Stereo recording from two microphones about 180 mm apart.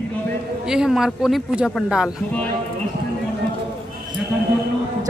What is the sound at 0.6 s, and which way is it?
A man's voice, 5° right (ahead or behind).